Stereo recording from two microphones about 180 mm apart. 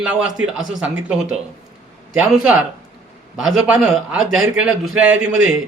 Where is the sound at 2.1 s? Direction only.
5° right (ahead or behind).